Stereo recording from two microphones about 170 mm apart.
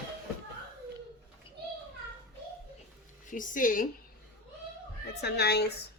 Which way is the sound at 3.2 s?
50° left (ahead or behind).